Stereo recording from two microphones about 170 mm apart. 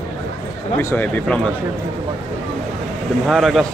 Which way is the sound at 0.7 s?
10° left (ahead or behind).